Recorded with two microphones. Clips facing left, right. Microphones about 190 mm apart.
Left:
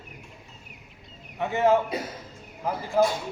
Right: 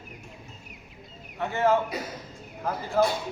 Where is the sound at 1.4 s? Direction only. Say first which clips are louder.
Left 2 dB; 15° left (ahead or behind).